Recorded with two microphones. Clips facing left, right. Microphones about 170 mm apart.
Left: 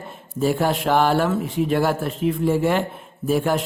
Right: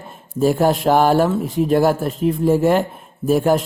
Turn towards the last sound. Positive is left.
turn(degrees=-40)  # may be behind; listen again after turning